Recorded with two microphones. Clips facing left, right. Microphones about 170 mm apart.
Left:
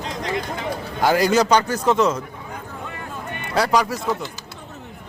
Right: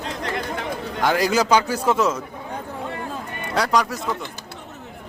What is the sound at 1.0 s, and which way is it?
A man's voice, centre (ahead or behind).